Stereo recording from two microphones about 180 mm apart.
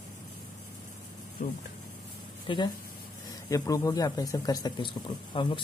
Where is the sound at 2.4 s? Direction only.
25° left (ahead or behind).